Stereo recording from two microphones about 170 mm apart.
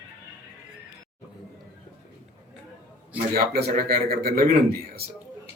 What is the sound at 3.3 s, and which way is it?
Speech, 70° right (ahead or behind).